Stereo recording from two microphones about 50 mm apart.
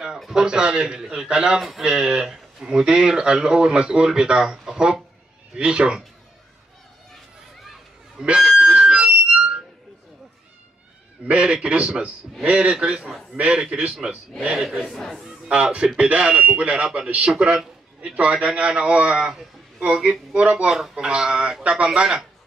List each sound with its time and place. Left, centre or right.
0.3 s speech: centre
8.3 s music: centre
11.2 s a man's voice: right
14.5 s speech: centre
14.9 s speech: centre
15.2 s a man's voice: right
17.3 s a man's voice: centre
20.7 s a man's voice: centre